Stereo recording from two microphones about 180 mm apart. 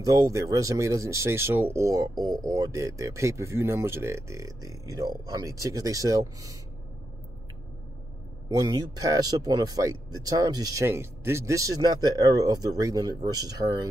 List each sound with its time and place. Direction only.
0.0 s speech: 20° right (ahead or behind)
8.5 s speech: 20° right (ahead or behind)